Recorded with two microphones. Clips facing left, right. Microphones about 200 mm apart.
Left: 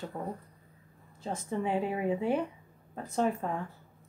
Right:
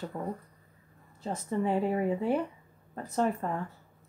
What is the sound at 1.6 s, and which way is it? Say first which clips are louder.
Speech: right 3 dB; 10° left (ahead or behind).